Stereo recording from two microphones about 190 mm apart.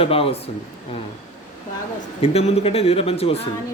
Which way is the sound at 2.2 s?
30° left (ahead or behind).